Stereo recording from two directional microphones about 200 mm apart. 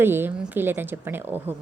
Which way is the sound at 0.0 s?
10° right (ahead or behind).